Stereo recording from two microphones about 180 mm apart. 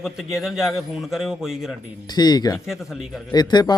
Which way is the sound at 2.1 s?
25° left (ahead or behind).